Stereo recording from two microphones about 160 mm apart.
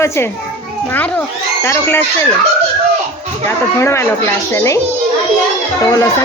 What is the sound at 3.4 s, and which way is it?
A child's voice, 15° left (ahead or behind).